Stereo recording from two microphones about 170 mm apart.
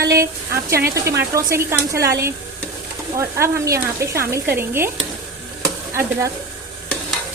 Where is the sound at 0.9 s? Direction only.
15° right (ahead or behind).